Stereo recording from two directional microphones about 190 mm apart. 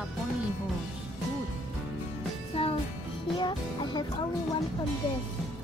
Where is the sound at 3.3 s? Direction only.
25° left (ahead or behind).